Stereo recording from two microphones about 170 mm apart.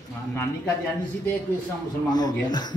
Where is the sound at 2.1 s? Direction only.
25° left (ahead or behind).